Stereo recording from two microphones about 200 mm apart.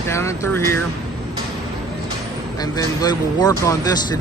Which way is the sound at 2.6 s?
20° left (ahead or behind).